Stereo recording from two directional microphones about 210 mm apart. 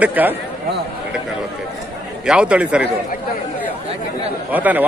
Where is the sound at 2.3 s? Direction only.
5° right (ahead or behind).